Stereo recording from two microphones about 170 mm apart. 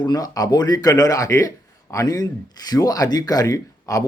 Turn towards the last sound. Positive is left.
turn(degrees=20)  # may be behind; listen again after turning